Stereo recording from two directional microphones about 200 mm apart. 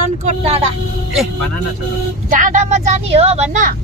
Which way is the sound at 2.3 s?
40° right (ahead or behind).